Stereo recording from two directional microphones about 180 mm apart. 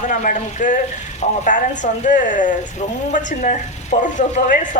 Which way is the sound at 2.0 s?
45° left (ahead or behind).